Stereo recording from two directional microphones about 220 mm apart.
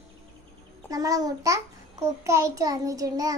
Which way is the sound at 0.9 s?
15° right (ahead or behind).